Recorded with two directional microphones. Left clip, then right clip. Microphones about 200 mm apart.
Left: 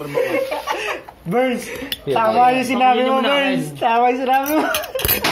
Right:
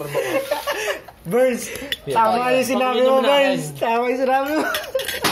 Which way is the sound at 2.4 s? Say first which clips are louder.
Left 4 dB; 40° right (ahead or behind).